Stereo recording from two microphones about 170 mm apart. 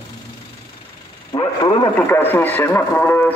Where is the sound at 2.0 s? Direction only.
10° left (ahead or behind).